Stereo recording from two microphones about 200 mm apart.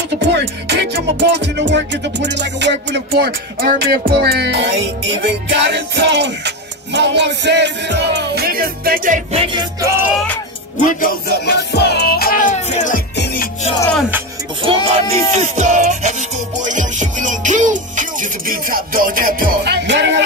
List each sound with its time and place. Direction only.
0.3 s music: 55° right (ahead or behind)
9.3 s music: 25° right (ahead or behind)
10.8 s music: 40° left (ahead or behind)
13.1 s music: 55° left (ahead or behind)
14.9 s music: 35° right (ahead or behind); by 20.2 s 65° right (ahead or behind)